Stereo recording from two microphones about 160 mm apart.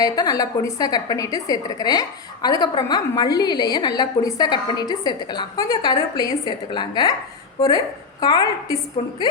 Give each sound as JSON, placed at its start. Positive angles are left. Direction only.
{"t": 0.0, "sound": "a woman's voice", "side_deg": 25}
{"t": 8.2, "sound": "a woman's voice", "side_deg": 25}
{"t": 9.0, "sound": "a woman's voice", "side_deg": 40}